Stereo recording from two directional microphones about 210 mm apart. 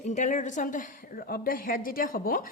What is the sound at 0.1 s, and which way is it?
A woman's voice, 35° left (ahead or behind).